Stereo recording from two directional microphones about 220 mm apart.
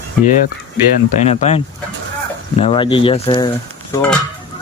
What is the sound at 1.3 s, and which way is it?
Speech, 30° left (ahead or behind).